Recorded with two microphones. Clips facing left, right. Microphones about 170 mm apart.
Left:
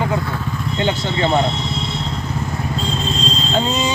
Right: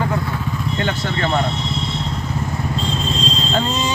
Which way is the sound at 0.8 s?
20° left (ahead or behind).